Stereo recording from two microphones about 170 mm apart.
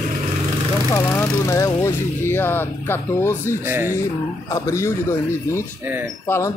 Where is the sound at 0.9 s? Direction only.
15° left (ahead or behind).